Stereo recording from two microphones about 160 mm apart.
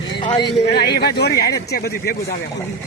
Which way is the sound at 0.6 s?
90° left.